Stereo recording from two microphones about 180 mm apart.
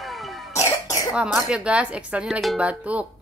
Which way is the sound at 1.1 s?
5° right (ahead or behind).